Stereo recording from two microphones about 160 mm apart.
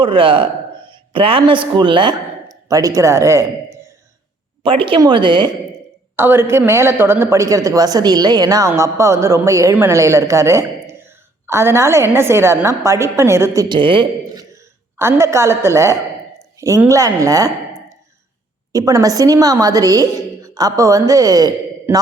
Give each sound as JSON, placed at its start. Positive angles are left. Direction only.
{"t": 0.0, "sound": "a man's voice", "side_deg": -35}
{"t": 4.6, "sound": "speech", "side_deg": -35}
{"t": 6.1, "sound": "a woman's voice", "side_deg": -15}
{"t": 14.5, "sound": "a woman's voice", "side_deg": -15}
{"t": 18.7, "sound": "a woman's voice", "side_deg": -20}